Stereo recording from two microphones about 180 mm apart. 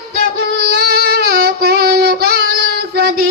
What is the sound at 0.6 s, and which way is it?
Child singing, 60° right (ahead or behind).